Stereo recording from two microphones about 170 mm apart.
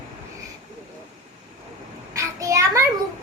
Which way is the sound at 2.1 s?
20° right (ahead or behind).